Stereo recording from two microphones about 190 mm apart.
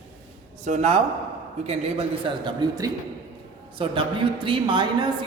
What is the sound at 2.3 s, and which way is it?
A man's voice, 25° right (ahead or behind).